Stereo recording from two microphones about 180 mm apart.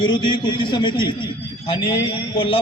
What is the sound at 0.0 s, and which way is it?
A man's voice, 25° left (ahead or behind).